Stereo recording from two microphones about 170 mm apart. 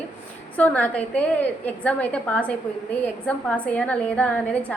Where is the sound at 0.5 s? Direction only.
10° left (ahead or behind).